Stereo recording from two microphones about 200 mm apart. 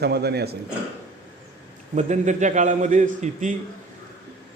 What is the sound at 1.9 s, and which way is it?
A man's voice, 35° right (ahead or behind).